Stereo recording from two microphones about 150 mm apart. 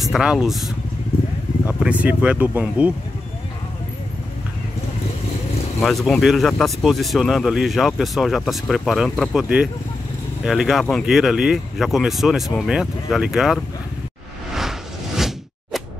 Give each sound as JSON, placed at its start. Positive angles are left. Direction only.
{"t": 0.0, "sound": "speech", "side_deg": 0}
{"t": 5.8, "sound": "speech", "side_deg": 0}
{"t": 14.5, "sound": "whoosh", "side_deg": 0}